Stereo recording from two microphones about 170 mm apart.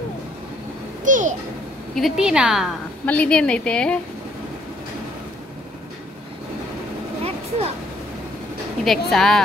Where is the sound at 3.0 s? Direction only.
10° left (ahead or behind).